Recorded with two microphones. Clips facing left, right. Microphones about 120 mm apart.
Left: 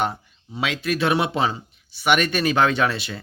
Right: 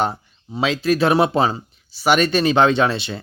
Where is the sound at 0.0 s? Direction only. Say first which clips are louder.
Right 3 dB; 30° right (ahead or behind).